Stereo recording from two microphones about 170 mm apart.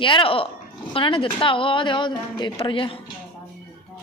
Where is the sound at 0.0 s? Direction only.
30° left (ahead or behind).